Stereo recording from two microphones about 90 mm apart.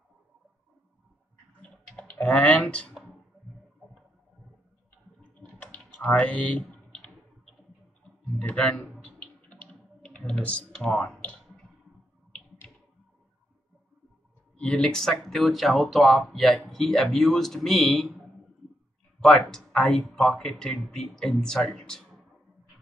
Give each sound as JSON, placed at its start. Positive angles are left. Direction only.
{"t": 1.6, "sound": "typing", "side_deg": 15}
{"t": 5.3, "sound": "a sound", "side_deg": 15}
{"t": 5.9, "sound": "clicking", "side_deg": 15}
{"t": 8.4, "sound": "speech", "side_deg": 15}
{"t": 9.0, "sound": "computer keyboard", "side_deg": 15}
{"t": 11.1, "sound": "clicking", "side_deg": 15}
{"t": 14.6, "sound": "speech", "side_deg": 10}
{"t": 19.2, "sound": "speech", "side_deg": 10}